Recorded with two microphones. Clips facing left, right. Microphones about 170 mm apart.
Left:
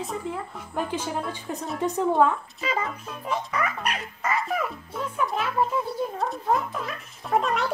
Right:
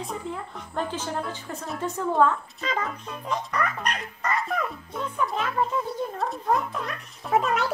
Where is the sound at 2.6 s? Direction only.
5° left (ahead or behind).